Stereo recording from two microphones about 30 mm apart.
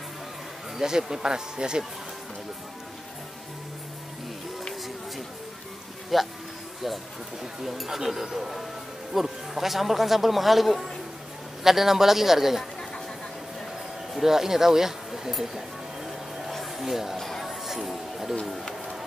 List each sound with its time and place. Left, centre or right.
0.7 s speech: centre
6.1 s a man's voice: centre
7.6 s a man's voice: centre
14.2 s speech: centre
16.4 s a sound: centre
17.2 s music: centre
17.6 s music: centre